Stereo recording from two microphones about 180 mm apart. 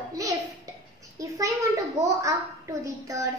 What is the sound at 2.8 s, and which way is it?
Child singing, 15° right (ahead or behind).